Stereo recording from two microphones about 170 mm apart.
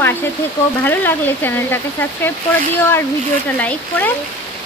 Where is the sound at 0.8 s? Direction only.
10° left (ahead or behind).